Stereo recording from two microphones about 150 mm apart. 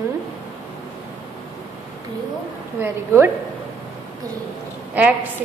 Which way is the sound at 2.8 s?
15° right (ahead or behind).